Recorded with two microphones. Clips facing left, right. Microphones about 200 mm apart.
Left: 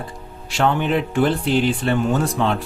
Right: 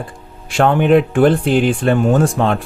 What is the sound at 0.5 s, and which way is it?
Speech, 55° right (ahead or behind).